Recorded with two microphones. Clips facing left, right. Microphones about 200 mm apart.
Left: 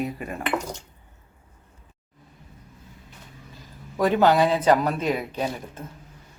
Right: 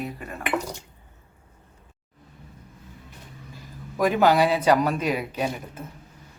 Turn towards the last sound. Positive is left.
turn(degrees=-10)  # may be behind; listen again after turning